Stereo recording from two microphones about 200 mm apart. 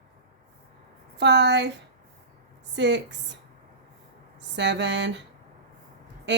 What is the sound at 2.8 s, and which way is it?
Speech, 60° right (ahead or behind).